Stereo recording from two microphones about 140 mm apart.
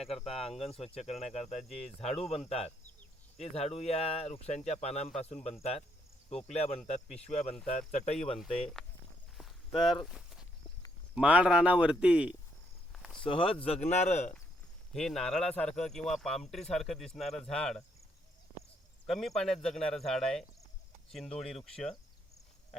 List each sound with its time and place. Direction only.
0.0 s speech: 45° left (ahead or behind)
8.8 s walk: 5° left (ahead or behind)
11.1 s a man's voice: 10° right (ahead or behind)
12.9 s a sound: centre (ahead or behind)
13.2 s speech: 40° left (ahead or behind)
13.8 s speech: 55° left (ahead or behind)
14.9 s speech: 5° left (ahead or behind)
19.0 s speech: centre (ahead or behind)